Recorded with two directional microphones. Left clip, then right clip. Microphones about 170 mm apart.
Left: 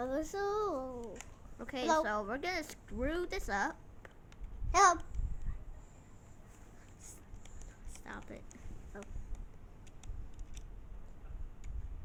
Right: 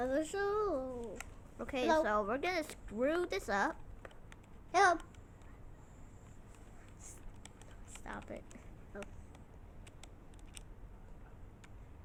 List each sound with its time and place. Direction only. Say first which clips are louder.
0.0 s a child's voice: right 1 dB; 15° left (ahead or behind)
1.5 s speech: even; 10° right (ahead or behind)
4.7 s babbling: left 2 dB; 15° left (ahead or behind)
8.0 s speech: right 2 dB; 15° right (ahead or behind)
8.9 s a sound: right 2 dB; 20° left (ahead or behind)